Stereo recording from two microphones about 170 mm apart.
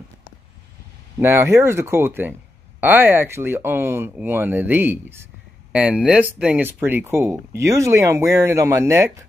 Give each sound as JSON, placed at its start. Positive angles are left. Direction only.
{"t": 1.2, "sound": "speech", "side_deg": -15}